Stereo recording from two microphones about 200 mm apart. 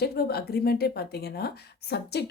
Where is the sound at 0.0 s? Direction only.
50° left (ahead or behind).